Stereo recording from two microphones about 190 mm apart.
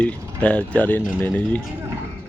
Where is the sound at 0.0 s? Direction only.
5° left (ahead or behind).